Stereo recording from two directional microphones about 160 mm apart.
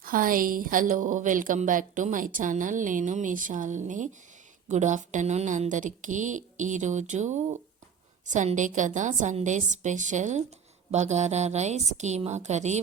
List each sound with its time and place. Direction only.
0.0 s a woman's voice: 60° right (ahead or behind)